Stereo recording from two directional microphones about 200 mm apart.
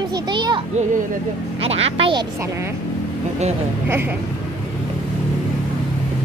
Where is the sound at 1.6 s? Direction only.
30° right (ahead or behind).